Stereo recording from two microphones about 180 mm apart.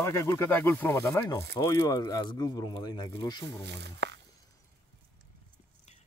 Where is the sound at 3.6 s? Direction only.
70° right (ahead or behind).